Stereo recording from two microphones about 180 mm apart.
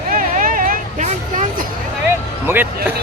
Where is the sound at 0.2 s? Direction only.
50° right (ahead or behind).